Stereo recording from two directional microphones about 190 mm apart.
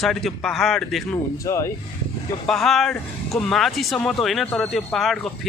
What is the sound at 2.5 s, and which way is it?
Speech, centre (ahead or behind).